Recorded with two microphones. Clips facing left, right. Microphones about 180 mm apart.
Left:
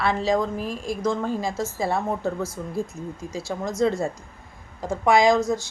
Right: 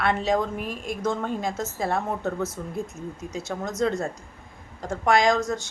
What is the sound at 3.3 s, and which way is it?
Speech, 20° right (ahead or behind).